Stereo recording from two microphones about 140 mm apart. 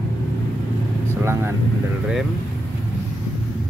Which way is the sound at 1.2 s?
20° right (ahead or behind).